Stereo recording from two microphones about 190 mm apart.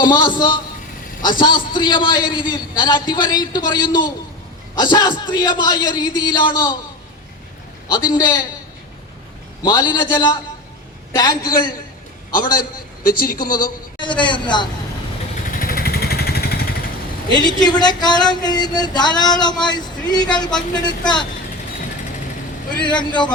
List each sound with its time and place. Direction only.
0.1 s speech: 20° left (ahead or behind)
7.9 s speech: 25° left (ahead or behind)
9.6 s speech: 25° left (ahead or behind)
12.3 s speech: 50° left (ahead or behind)
14.0 s speech: 25° left (ahead or behind)
15.4 s vehicle: 50° left (ahead or behind)
17.3 s a man's voice: 20° left (ahead or behind)
22.7 s speech: 25° left (ahead or behind)